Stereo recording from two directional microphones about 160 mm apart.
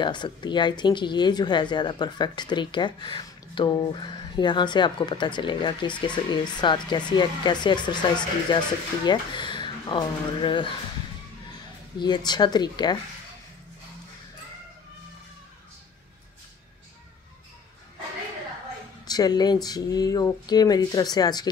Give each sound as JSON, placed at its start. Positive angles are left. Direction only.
{"t": 0.0, "sound": "speech", "side_deg": 30}
{"t": 12.3, "sound": "speech", "side_deg": 25}
{"t": 19.0, "sound": "speech", "side_deg": 25}